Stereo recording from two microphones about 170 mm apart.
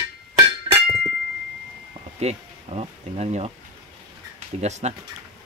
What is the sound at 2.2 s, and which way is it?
Speech, 40° right (ahead or behind).